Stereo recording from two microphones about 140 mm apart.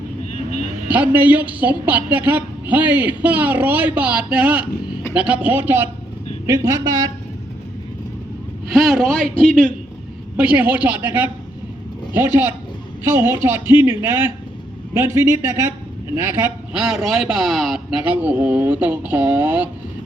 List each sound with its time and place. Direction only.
0.9 s a woman's voice: 10° right (ahead or behind); by 7.1 s 25° right (ahead or behind)
8.7 s a man's voice: centre (ahead or behind)
10.3 s a woman's voice: 10° right (ahead or behind)
16.7 s a woman's voice: 5° right (ahead or behind)